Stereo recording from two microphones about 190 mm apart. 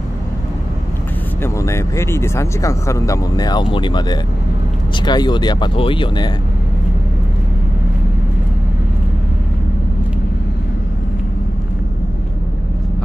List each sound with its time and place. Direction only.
1.4 s speech: 15° left (ahead or behind)